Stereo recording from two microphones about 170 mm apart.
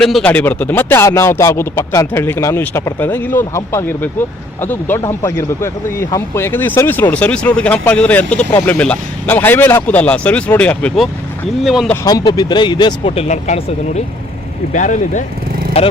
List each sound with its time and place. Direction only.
0.0 s speech: 5° left (ahead or behind)
12.0 s speech: 25° left (ahead or behind); by 15.2 s 45° left (ahead or behind)
15.8 s speech: 35° left (ahead or behind)